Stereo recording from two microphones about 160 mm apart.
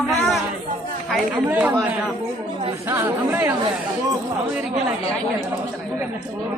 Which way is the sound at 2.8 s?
15° right (ahead or behind).